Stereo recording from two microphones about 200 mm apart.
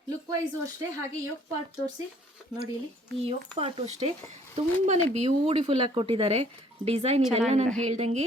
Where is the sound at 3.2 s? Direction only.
30° right (ahead or behind).